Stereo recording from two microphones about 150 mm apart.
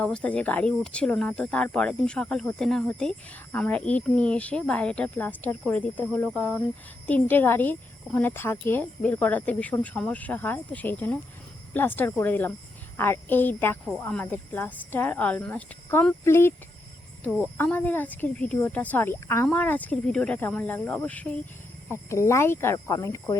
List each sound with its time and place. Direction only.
0.0 s speech: 5° left (ahead or behind)
17.6 s speech: 10° left (ahead or behind)